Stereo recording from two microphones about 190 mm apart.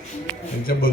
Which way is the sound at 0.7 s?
50° left (ahead or behind).